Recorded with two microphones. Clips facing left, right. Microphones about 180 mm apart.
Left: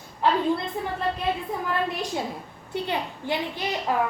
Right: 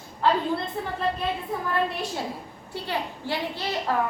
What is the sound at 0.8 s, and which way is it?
Speech, 15° left (ahead or behind).